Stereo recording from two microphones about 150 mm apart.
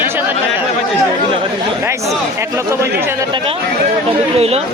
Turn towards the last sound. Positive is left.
turn(degrees=-40)  # may be behind; listen again after turning